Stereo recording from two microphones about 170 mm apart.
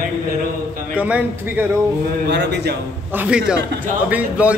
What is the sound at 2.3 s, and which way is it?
Speech, 85° right.